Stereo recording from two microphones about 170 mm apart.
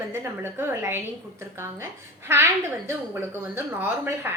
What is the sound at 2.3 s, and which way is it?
A woman's voice, 15° right (ahead or behind).